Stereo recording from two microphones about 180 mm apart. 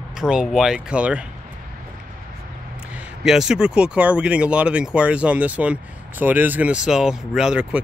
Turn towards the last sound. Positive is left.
turn(degrees=-5)  # may be behind; listen again after turning